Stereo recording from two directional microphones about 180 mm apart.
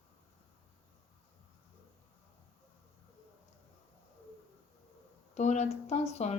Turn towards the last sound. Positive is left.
turn(degrees=35)  # may be behind; listen again after turning